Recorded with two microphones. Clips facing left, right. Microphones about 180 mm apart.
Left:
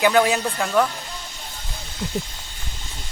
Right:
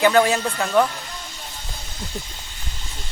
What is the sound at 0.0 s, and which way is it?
Speech, 5° left (ahead or behind).